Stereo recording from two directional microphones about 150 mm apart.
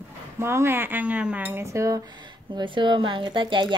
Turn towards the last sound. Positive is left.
turn(degrees=-30)  # may be behind; listen again after turning